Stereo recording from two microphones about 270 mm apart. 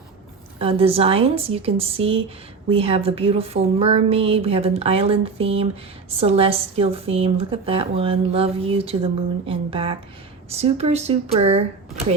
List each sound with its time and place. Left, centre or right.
0.6 s a woman's voice: right